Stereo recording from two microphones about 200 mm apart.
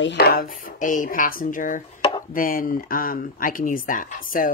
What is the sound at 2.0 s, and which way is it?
Chopping, 25° left (ahead or behind).